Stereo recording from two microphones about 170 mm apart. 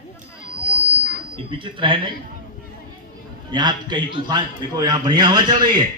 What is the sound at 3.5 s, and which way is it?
A man's voice, 25° right (ahead or behind).